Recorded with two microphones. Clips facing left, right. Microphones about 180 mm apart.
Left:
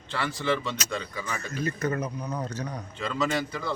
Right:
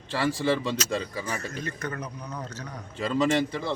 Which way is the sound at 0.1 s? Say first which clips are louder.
Right 3 dB; 30° right (ahead or behind).